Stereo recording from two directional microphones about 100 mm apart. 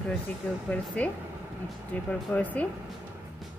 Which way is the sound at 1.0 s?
15° left (ahead or behind).